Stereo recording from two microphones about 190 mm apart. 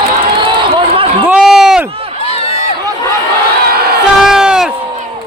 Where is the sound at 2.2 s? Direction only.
30° left (ahead or behind).